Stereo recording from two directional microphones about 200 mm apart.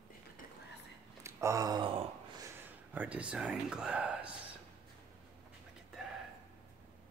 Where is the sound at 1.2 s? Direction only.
15° right (ahead or behind).